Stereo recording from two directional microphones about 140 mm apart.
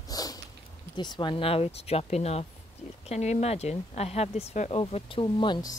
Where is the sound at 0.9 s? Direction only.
35° left (ahead or behind).